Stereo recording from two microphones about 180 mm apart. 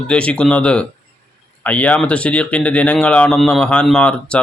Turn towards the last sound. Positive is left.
turn(degrees=5)  # may be behind; listen again after turning